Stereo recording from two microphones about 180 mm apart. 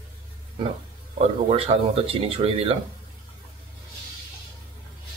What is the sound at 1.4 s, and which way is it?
Speech, 35° right (ahead or behind).